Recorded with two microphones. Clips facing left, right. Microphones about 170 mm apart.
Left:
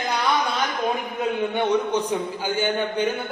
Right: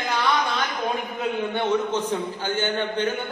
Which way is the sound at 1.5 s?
15° left (ahead or behind).